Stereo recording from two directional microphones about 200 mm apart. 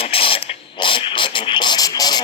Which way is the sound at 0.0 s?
30° left (ahead or behind).